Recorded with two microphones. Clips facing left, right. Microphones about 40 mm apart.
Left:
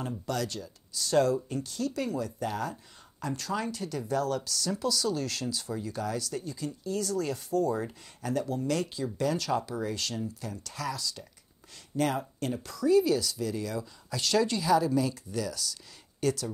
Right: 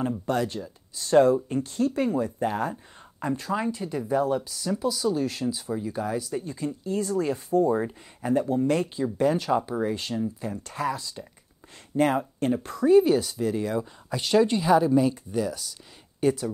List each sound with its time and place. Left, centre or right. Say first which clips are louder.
0.0 s speech: right 6 dB; right